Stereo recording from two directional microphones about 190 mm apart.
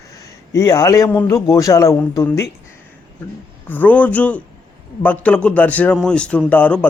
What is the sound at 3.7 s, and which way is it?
Speech, 10° left (ahead or behind).